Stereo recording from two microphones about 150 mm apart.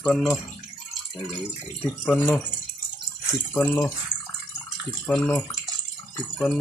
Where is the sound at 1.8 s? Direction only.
15° left (ahead or behind).